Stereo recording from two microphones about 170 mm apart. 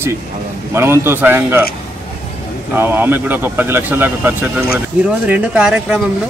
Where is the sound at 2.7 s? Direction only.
10° right (ahead or behind).